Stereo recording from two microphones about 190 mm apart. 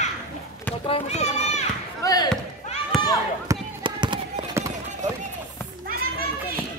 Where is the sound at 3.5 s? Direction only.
25° right (ahead or behind).